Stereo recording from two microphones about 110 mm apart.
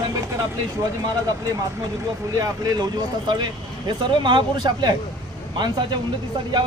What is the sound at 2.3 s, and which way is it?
Speech, 35° right (ahead or behind).